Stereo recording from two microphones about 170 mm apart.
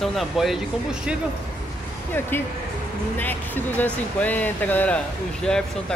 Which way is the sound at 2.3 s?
15° left (ahead or behind).